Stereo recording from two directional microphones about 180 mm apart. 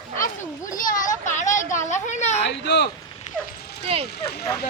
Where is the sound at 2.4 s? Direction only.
70° left (ahead or behind).